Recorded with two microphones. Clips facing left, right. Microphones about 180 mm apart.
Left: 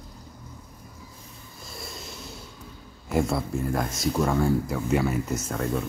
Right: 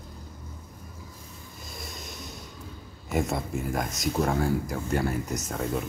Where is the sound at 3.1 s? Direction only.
Centre (ahead or behind).